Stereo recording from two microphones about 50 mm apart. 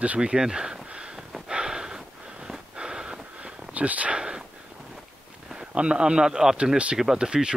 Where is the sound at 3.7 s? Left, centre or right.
Right.